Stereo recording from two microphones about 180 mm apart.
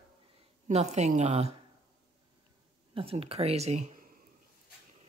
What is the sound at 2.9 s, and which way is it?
Speech, 30° right (ahead or behind).